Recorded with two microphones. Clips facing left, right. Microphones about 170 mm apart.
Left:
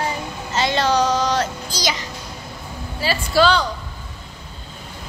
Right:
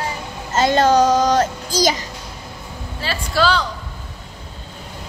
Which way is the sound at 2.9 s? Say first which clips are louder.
Left 3 dB; 10° left (ahead or behind).